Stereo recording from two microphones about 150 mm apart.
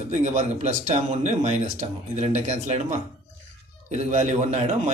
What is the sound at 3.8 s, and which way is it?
Speech, 50° right (ahead or behind).